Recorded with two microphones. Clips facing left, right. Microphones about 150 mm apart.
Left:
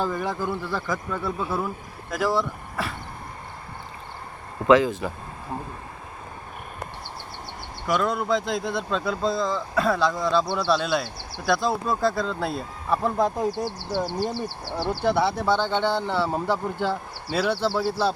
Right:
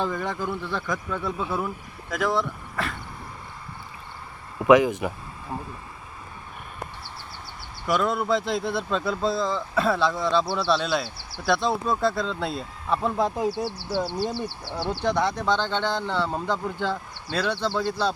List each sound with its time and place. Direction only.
0.0 s speech: 5° left (ahead or behind)
4.6 s speech: 15° right (ahead or behind)
7.9 s speech: centre (ahead or behind)
13.7 s speech: 15° left (ahead or behind)